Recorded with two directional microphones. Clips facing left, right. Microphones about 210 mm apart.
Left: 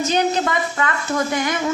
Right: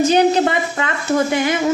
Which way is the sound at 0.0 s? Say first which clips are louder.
Right 6 dB; 30° right (ahead or behind).